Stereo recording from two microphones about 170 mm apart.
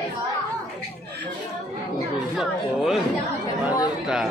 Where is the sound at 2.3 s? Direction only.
Centre (ahead or behind).